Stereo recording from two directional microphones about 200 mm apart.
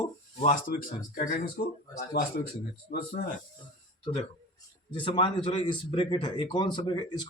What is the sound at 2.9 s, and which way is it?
Speech, 50° left (ahead or behind).